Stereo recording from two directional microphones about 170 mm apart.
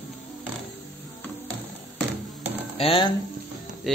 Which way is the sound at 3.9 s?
Centre (ahead or behind).